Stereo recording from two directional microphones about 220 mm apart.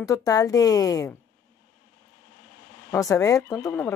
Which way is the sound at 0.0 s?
15° left (ahead or behind).